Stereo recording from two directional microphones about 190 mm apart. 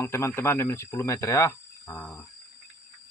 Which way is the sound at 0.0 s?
15° left (ahead or behind).